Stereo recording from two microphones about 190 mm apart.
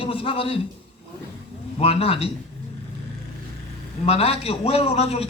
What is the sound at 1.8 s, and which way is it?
Speech, 30° left (ahead or behind).